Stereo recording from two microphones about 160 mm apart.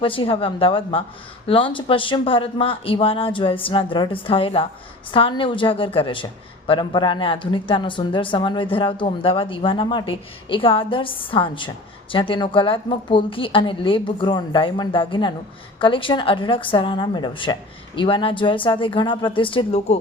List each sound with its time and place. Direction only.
0.0 s a woman's voice: 35° left (ahead or behind)